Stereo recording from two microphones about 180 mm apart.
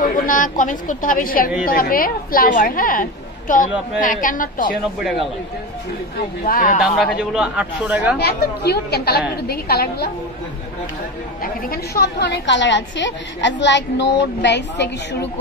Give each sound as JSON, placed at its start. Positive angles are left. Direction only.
{"t": 0.0, "sound": "a woman's voice", "side_deg": 50}
{"t": 6.4, "sound": "a woman's voice", "side_deg": 50}
{"t": 6.8, "sound": "speech", "side_deg": -5}
{"t": 8.2, "sound": "a woman's voice", "side_deg": 60}
{"t": 11.4, "sound": "a woman's voice", "side_deg": 55}